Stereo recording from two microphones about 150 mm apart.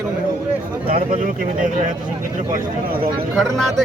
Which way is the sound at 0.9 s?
70° right (ahead or behind).